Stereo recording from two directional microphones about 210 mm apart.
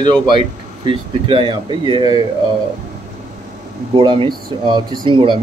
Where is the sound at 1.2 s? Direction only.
25° right (ahead or behind).